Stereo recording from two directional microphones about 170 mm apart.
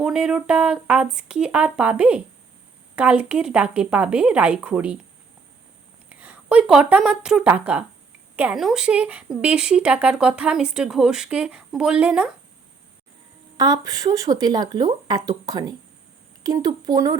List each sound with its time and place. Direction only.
0.0 s speech: 5° right (ahead or behind)
6.1 s speech: 10° right (ahead or behind)
13.6 s speech: 20° right (ahead or behind)